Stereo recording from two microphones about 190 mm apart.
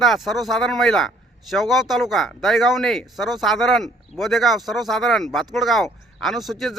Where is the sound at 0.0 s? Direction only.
Centre (ahead or behind).